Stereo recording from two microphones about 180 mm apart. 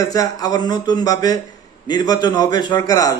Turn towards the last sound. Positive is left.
turn(degrees=20)  # may be behind; listen again after turning